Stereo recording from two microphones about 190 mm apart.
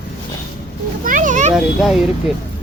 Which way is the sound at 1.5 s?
Centre (ahead or behind).